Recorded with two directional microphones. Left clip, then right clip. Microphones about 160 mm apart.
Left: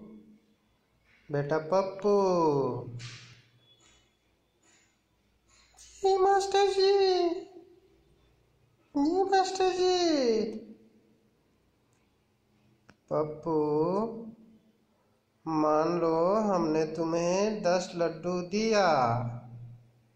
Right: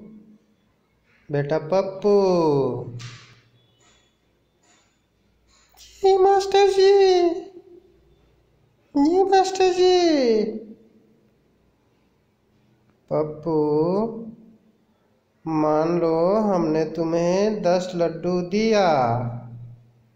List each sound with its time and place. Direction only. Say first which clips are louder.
1.3 s mantra: right 6 dB; 10° right (ahead or behind)
5.8 s babbling: right 8 dB; 20° right (ahead or behind)
8.9 s a child's voice: right 8 dB; 20° right (ahead or behind)
13.1 s mantra: right 6 dB; 15° right (ahead or behind)
15.4 s mantra: right 6 dB; 15° right (ahead or behind)